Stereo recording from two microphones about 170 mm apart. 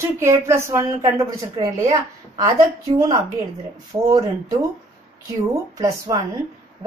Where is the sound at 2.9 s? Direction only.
25° right (ahead or behind).